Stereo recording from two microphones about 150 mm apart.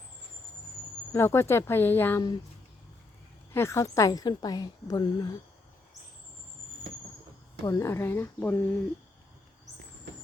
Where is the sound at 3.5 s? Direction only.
15° left (ahead or behind).